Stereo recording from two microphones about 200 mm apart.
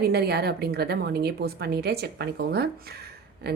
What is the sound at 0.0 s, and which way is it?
A woman's voice, 50° right (ahead or behind).